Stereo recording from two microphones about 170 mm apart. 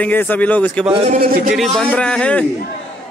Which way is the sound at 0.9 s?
40° right (ahead or behind).